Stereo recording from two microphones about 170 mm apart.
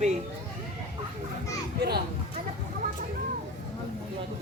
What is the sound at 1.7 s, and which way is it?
Speech, 70° right (ahead or behind).